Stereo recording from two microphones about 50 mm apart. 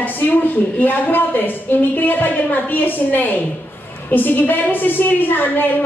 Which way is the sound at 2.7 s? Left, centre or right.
Left.